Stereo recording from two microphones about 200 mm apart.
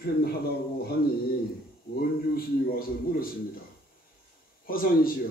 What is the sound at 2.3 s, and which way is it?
Speech, 45° left (ahead or behind).